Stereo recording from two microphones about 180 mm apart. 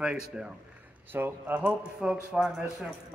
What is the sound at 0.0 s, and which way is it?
A man's voice, 5° right (ahead or behind).